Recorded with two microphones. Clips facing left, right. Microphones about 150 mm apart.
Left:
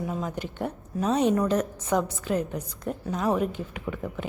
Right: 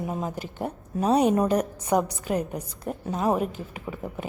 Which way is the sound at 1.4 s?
10° right (ahead or behind).